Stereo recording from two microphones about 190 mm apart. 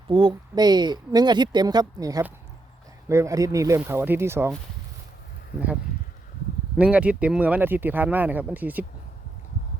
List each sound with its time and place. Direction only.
0.1 s speech: 25° right (ahead or behind)
6.7 s speech: 5° right (ahead or behind)